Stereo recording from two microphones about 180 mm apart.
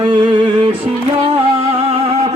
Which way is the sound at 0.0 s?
25° right (ahead or behind).